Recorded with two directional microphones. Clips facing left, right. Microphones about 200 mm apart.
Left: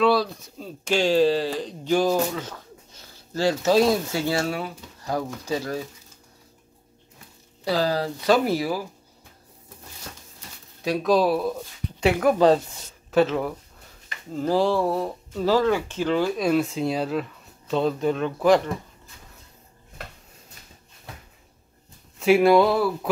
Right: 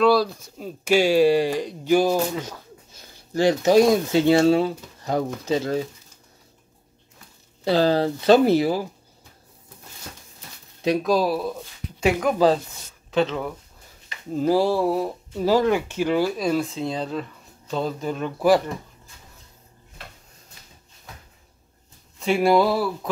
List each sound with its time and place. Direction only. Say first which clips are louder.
0.0 s speech: right 2 dB; centre (ahead or behind); by 5.9 s 25° right (ahead or behind)
7.6 s speech: right 4 dB; 25° right (ahead or behind)
11.0 s speech: left 4 dB; centre (ahead or behind)
14.3 s speech: right 2 dB; 10° right (ahead or behind)
22.2 s speech: left 2 dB; centre (ahead or behind)